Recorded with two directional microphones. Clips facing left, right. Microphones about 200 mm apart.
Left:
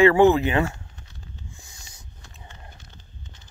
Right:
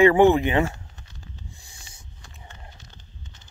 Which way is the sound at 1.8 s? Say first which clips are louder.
Even; 30° right (ahead or behind).